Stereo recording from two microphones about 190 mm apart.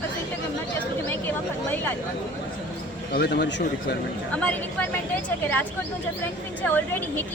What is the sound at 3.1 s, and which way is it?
Speech, 60° left (ahead or behind).